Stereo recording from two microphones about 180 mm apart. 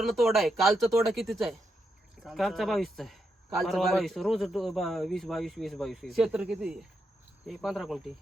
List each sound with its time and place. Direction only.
0.0 s a man's voice: centre (ahead or behind)